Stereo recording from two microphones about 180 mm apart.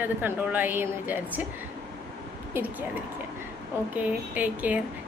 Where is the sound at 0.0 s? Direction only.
10° right (ahead or behind).